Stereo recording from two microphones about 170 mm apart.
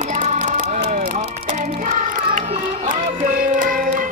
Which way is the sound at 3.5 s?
50° right (ahead or behind).